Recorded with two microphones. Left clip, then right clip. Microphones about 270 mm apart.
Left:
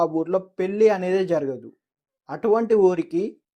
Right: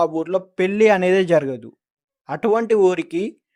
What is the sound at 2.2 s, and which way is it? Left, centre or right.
Speech, right.